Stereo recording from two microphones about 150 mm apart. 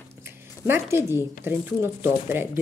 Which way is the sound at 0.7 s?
15° right (ahead or behind).